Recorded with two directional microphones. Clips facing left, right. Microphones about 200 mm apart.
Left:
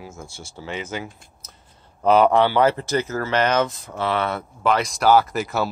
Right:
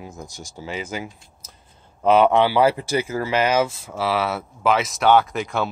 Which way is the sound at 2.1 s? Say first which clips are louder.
Even; 5° right (ahead or behind).